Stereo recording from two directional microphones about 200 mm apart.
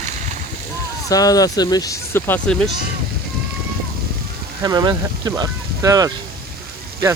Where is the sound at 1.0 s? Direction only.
20° left (ahead or behind).